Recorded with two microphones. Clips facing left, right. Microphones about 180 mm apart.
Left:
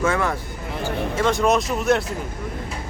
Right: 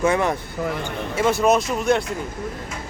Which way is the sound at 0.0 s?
20° right (ahead or behind).